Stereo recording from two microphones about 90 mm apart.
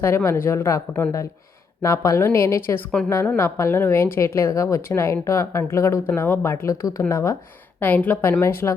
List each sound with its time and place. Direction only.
0.0 s a woman's voice: 30° left (ahead or behind)
6.1 s a woman's voice: 20° left (ahead or behind)
7.8 s a woman's voice: 20° left (ahead or behind)